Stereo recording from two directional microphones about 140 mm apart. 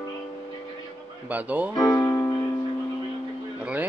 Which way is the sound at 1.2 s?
10° right (ahead or behind).